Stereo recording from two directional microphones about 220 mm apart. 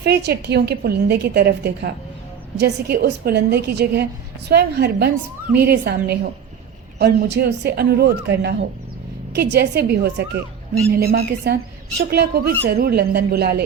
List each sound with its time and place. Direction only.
0.0 s a woman's voice: 50° right (ahead or behind)